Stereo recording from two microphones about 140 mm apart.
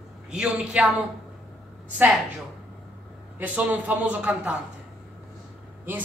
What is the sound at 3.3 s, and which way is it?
A man's voice, 10° right (ahead or behind).